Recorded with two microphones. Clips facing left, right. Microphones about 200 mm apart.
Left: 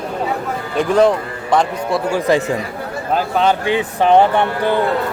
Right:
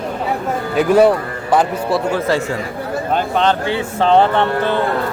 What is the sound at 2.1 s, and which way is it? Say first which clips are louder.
A man's voice: left 2 dB; 15° left (ahead or behind).